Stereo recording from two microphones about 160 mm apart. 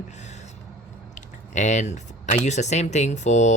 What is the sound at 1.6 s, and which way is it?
Speech, 45° left (ahead or behind).